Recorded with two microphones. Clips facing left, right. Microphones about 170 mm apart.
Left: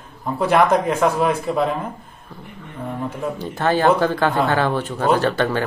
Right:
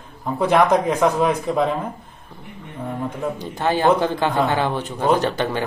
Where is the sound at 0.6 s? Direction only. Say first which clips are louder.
Even; 10° right (ahead or behind).